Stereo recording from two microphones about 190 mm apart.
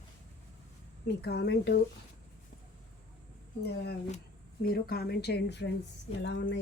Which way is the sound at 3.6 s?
60° left (ahead or behind).